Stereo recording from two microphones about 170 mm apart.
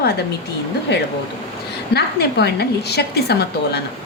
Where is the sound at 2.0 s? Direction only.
75° left (ahead or behind).